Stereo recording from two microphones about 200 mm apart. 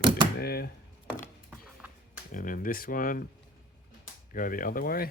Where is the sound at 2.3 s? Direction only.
45° left (ahead or behind).